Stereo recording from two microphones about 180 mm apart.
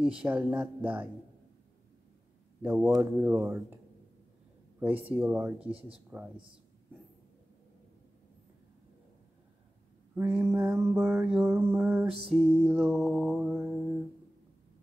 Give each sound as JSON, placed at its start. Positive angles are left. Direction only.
{"t": 0.0, "sound": "mantra", "side_deg": -5}
{"t": 3.0, "sound": "mantra", "side_deg": -10}
{"t": 4.7, "sound": "speech", "side_deg": -10}
{"t": 5.1, "sound": "mantra", "side_deg": -10}
{"t": 5.7, "sound": "speech", "side_deg": -30}
{"t": 10.1, "sound": "mantra", "side_deg": -15}
{"t": 12.3, "sound": "music", "side_deg": 0}